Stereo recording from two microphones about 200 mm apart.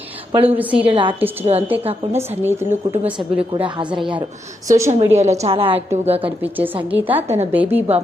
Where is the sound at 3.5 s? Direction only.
25° right (ahead or behind).